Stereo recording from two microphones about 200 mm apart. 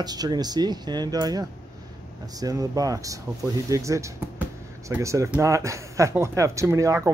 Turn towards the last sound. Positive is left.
turn(degrees=-15)  # may be behind; listen again after turning